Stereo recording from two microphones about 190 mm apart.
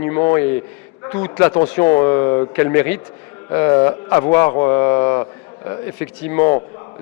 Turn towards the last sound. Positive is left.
turn(degrees=15)  # may be behind; listen again after turning